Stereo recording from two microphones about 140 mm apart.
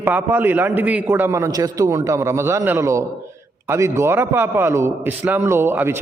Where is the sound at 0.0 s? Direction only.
15° right (ahead or behind).